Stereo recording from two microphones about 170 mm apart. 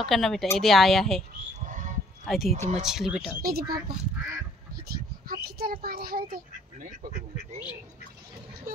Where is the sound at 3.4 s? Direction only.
65° right (ahead or behind).